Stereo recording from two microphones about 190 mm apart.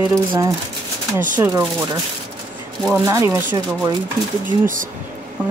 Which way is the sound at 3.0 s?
15° right (ahead or behind).